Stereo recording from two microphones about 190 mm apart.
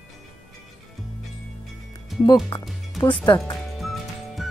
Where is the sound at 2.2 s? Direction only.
20° left (ahead or behind).